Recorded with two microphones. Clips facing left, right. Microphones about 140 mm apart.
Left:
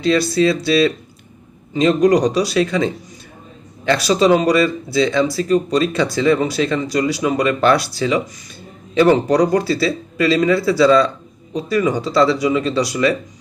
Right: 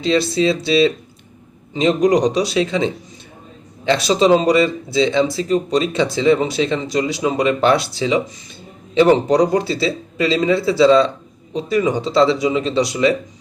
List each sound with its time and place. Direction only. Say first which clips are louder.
0.0 s speech: left 1 dB; 20° right (ahead or behind)